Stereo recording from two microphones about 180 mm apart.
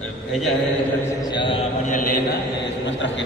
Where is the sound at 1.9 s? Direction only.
50° left (ahead or behind).